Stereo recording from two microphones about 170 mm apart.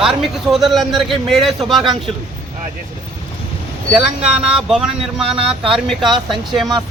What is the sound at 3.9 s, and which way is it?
A man's voice, 5° right (ahead or behind).